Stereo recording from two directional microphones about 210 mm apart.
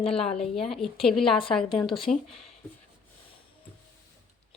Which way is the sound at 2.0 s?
Centre (ahead or behind).